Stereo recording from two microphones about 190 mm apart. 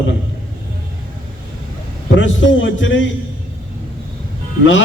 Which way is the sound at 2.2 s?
80° left.